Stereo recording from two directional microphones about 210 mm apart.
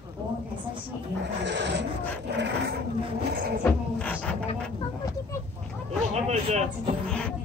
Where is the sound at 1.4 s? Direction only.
55° right (ahead or behind).